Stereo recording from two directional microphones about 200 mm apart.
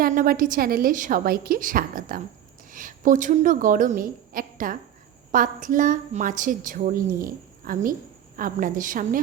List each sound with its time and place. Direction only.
0.0 s a woman's voice: 45° right (ahead or behind)